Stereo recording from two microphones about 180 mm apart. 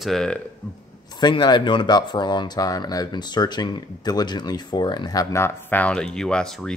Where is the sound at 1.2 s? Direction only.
25° left (ahead or behind).